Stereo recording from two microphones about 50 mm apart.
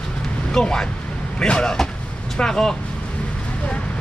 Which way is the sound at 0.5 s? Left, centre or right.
Centre.